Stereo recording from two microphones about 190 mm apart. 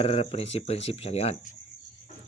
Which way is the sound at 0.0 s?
30° left (ahead or behind).